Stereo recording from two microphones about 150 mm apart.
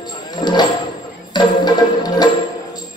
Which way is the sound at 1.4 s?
25° left (ahead or behind).